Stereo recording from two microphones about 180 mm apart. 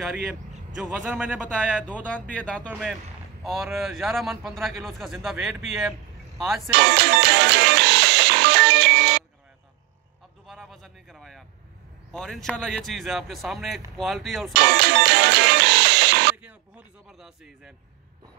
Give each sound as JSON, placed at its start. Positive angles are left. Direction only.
{"t": 0.7, "sound": "a man's voice", "side_deg": -5}
{"t": 2.0, "sound": "a man's voice", "side_deg": 5}
{"t": 6.7, "sound": "music", "side_deg": -70}
{"t": 10.4, "sound": "a sound", "side_deg": 0}
{"t": 12.1, "sound": "a man's voice", "side_deg": 5}
{"t": 14.5, "sound": "music", "side_deg": -65}
{"t": 16.3, "sound": "a sound", "side_deg": -5}